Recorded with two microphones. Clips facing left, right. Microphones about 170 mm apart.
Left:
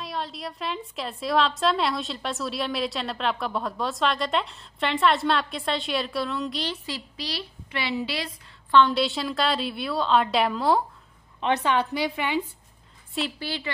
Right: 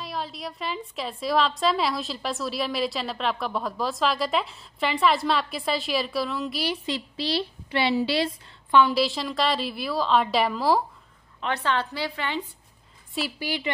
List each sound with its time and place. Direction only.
0.0 s a woman's voice: centre (ahead or behind)
6.9 s a woman's voice: 30° right (ahead or behind)
8.7 s a woman's voice: 5° right (ahead or behind)
11.4 s a woman's voice: 15° left (ahead or behind)
13.4 s a woman's voice: 15° right (ahead or behind)